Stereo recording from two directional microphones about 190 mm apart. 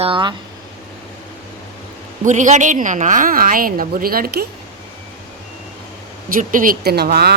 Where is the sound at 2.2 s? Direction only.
40° right (ahead or behind).